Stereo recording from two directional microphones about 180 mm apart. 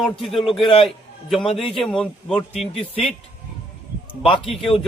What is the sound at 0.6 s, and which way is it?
Speech, 30° left (ahead or behind).